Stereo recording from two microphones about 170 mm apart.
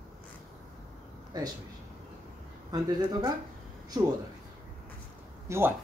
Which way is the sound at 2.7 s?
25° right (ahead or behind).